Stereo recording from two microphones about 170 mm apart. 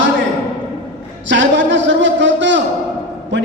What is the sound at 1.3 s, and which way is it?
A man's voice, 90° right.